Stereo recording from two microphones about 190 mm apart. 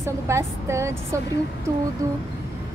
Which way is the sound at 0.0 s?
15° right (ahead or behind).